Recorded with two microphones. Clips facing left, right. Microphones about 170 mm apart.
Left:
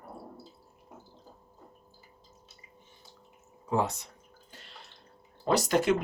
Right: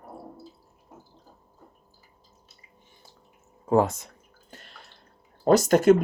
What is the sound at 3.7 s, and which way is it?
Speech, 45° right (ahead or behind).